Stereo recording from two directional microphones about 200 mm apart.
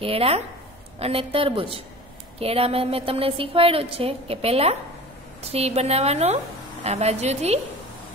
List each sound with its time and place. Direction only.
0.0 s a woman's voice: 30° right (ahead or behind)